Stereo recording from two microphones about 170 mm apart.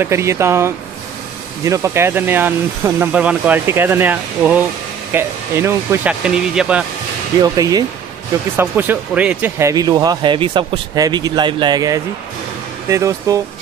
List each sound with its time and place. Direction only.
0.0 s speech: 15° right (ahead or behind)
7.4 s speech: 20° right (ahead or behind)
8.5 s speech: 10° right (ahead or behind)